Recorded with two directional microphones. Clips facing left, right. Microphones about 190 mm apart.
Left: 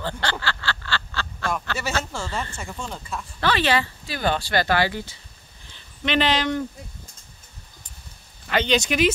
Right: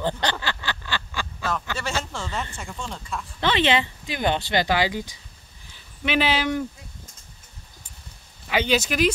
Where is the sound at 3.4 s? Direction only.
20° right (ahead or behind).